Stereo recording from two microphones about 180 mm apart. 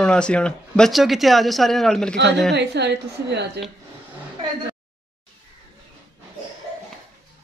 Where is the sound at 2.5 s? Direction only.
70° right (ahead or behind).